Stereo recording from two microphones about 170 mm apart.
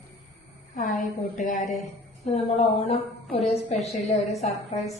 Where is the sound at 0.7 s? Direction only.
50° left (ahead or behind).